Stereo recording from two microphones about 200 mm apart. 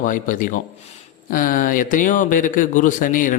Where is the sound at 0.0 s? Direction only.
40° left (ahead or behind).